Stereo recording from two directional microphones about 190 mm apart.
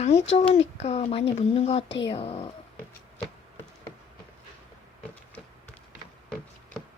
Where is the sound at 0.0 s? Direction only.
35° left (ahead or behind).